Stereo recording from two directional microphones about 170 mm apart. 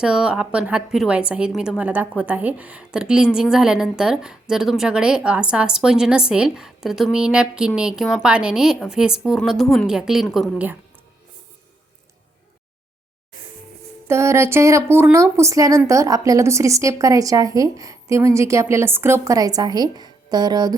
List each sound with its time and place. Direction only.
0.0 s a woman's voice: 5° right (ahead or behind)
14.1 s a woman's voice: 15° right (ahead or behind)